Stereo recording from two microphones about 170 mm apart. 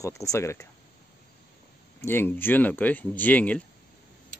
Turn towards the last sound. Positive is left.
turn(degrees=10)  # may be behind; listen again after turning